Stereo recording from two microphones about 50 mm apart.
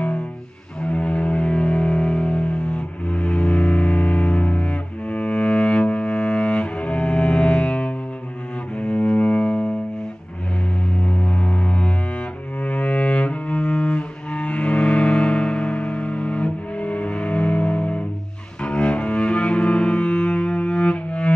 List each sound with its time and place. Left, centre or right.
0.8 s music: left
11.1 s pulse: left
12.6 s cello: left